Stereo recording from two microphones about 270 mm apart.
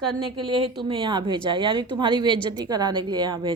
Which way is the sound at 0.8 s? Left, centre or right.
Centre.